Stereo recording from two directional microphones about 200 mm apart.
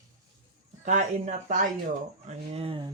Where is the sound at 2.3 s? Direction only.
30° right (ahead or behind).